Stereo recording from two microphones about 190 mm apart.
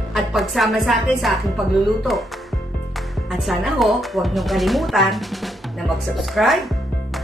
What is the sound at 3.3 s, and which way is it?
Speech, centre (ahead or behind).